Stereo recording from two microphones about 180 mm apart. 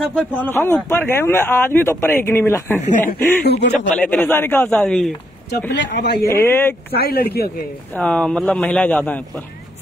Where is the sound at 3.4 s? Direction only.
65° left (ahead or behind).